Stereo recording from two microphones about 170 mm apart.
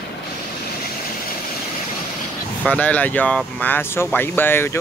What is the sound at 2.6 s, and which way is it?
Speech, 10° left (ahead or behind).